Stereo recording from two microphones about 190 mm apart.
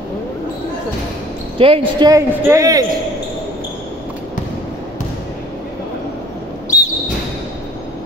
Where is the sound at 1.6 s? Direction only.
30° right (ahead or behind).